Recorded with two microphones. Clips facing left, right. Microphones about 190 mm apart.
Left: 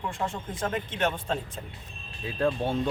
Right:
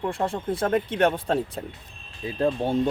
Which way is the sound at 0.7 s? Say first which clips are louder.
Right 7 dB; 55° right (ahead or behind).